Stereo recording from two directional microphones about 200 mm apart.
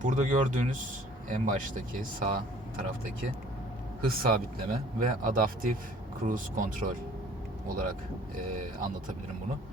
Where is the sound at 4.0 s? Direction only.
45° right (ahead or behind).